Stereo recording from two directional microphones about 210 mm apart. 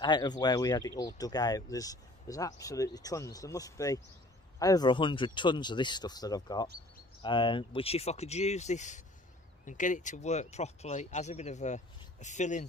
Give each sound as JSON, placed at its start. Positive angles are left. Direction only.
{"t": 0.0, "sound": "speech", "side_deg": 20}